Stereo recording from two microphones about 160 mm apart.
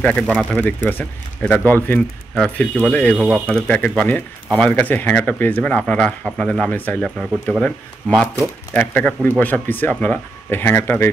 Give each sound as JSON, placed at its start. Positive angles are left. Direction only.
{"t": 0.0, "sound": "speech", "side_deg": 5}
{"t": 3.2, "sound": "speech", "side_deg": -5}
{"t": 3.4, "sound": "speech", "side_deg": 5}